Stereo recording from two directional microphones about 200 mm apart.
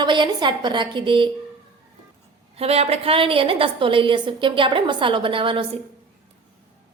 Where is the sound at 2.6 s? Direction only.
30° right (ahead or behind).